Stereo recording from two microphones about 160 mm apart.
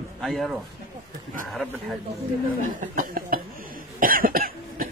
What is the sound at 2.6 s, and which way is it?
Speech, 65° right (ahead or behind).